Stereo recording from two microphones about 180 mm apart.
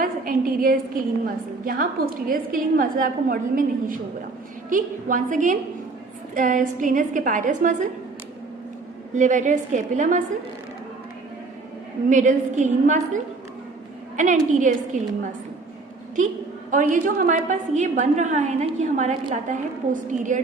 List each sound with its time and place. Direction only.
0.0 s a woman's voice: 50° right (ahead or behind)
9.1 s a woman's voice: 45° right (ahead or behind)
12.0 s a woman's voice: 45° right (ahead or behind)
14.2 s a woman's voice: 45° right (ahead or behind)
16.7 s a woman's voice: 45° right (ahead or behind)